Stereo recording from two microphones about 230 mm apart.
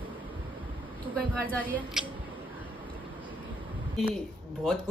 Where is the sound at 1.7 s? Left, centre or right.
Centre.